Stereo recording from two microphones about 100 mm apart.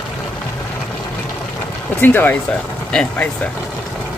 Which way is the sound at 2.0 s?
20° left (ahead or behind).